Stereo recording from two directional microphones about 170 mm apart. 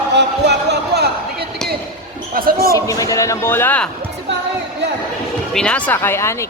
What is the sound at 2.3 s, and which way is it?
Speech, 60° right (ahead or behind).